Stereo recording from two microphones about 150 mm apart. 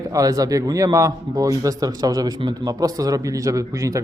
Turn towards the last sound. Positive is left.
turn(degrees=-20)  # may be behind; listen again after turning